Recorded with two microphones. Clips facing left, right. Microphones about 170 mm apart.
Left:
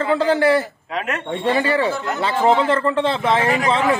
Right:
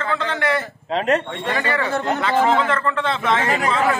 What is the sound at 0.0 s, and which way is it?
Speech, 35° left (ahead or behind).